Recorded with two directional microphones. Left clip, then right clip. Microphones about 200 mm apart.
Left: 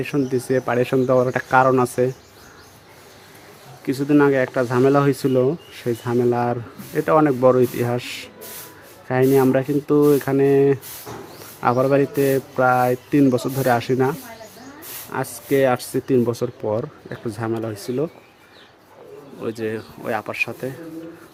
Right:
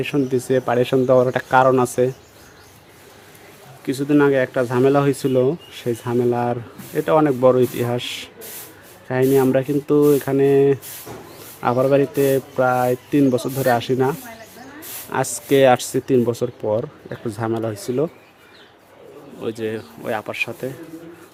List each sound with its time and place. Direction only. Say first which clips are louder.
0.0 s speech: right 2 dB; centre (ahead or behind)
3.8 s speech: even; centre (ahead or behind)
19.4 s speech: right 1 dB; centre (ahead or behind)